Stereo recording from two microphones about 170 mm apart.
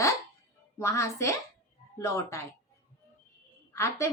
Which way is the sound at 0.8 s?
15° left (ahead or behind).